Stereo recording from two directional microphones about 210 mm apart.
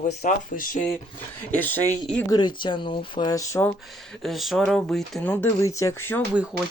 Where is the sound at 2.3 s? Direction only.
20° left (ahead or behind).